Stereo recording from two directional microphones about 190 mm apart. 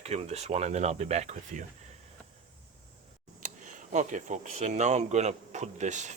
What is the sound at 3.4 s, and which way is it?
Speech, 40° right (ahead or behind).